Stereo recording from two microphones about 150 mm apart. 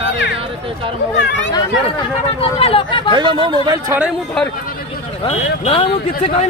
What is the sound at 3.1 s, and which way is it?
Speech, 35° right (ahead or behind).